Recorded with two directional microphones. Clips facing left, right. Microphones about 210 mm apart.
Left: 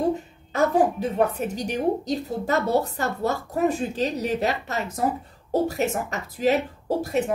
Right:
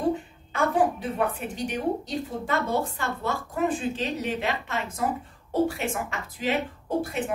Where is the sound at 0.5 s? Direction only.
40° left (ahead or behind).